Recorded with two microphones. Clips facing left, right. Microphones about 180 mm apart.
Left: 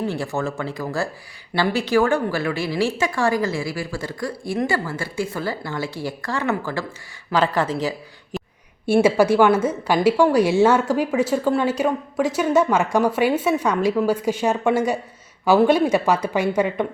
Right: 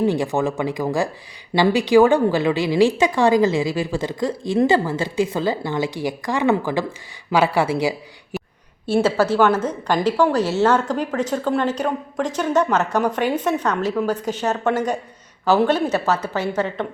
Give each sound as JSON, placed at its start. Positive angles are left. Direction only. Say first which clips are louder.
{"t": 0.1, "sound": "a woman's voice", "louder": "right 5 dB", "side_deg": -15}
{"t": 8.9, "sound": "a woman's voice", "louder": "left 2 dB", "side_deg": 10}